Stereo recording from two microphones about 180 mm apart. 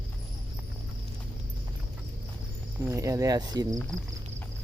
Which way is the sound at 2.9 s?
15° right (ahead or behind).